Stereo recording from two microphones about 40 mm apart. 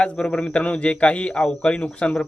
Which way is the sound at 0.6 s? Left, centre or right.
Left.